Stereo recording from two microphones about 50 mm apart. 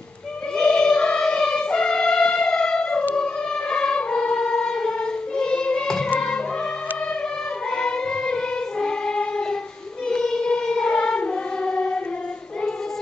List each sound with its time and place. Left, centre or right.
0.6 s music: centre
7.7 s music: centre